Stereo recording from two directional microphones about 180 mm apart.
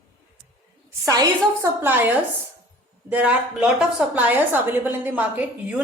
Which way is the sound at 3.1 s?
5° right (ahead or behind).